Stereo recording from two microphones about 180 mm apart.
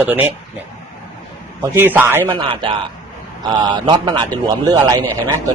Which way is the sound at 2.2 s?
25° right (ahead or behind).